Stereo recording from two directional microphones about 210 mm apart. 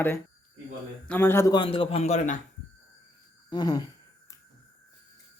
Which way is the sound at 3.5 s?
20° left (ahead or behind).